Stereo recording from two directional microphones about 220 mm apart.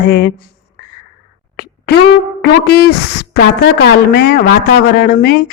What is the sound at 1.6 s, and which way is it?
Music, 45° left (ahead or behind).